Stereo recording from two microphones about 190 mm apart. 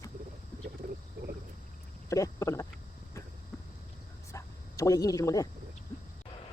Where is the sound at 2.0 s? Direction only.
15° left (ahead or behind).